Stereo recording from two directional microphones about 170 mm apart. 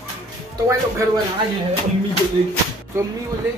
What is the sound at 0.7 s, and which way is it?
Speech, 15° right (ahead or behind).